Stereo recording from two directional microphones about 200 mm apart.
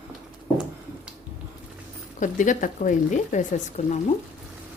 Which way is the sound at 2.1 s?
40° left (ahead or behind).